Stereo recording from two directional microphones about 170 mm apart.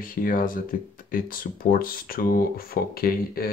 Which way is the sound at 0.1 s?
55° left (ahead or behind).